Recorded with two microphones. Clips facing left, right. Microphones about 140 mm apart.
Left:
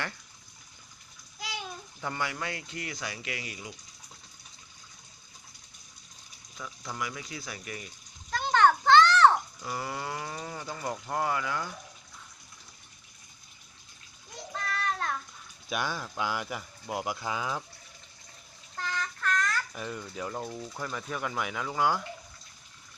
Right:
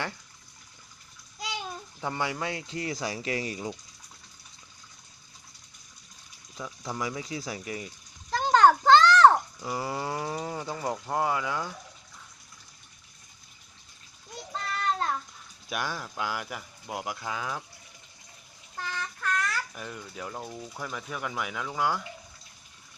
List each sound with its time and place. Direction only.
2.0 s speech: 20° right (ahead or behind); by 3.8 s 35° right (ahead or behind)
6.6 s speech: 20° right (ahead or behind)
8.3 s children playing: 40° right (ahead or behind)
9.6 s speech: 20° right (ahead or behind)
14.5 s child singing: 30° right (ahead or behind)
15.7 s speech: 5° right (ahead or behind)
18.9 s a sound: 10° right (ahead or behind)
20.5 s speech: 5° right (ahead or behind)